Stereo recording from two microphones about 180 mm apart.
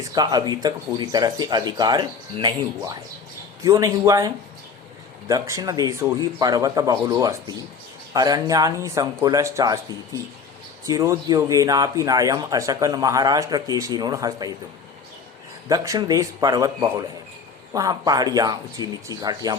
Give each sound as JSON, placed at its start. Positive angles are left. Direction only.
{"t": 0.0, "sound": "speech", "side_deg": -20}
{"t": 5.3, "sound": "speech", "side_deg": -20}
{"t": 10.8, "sound": "speech", "side_deg": -15}
{"t": 15.7, "sound": "speech", "side_deg": -20}